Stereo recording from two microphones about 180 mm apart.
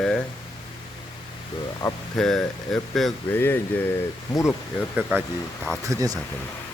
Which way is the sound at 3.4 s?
10° left (ahead or behind).